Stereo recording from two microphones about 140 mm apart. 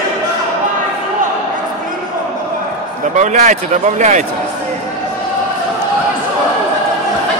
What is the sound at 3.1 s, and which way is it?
Speech, 60° right (ahead or behind).